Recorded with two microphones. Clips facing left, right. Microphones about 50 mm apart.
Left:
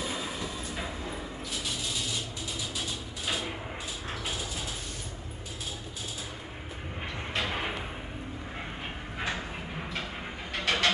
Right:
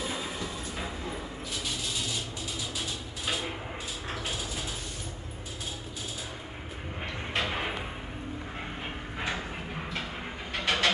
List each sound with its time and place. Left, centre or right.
0.0 s train: centre
7.3 s a sound: centre
10.5 s vehicle: centre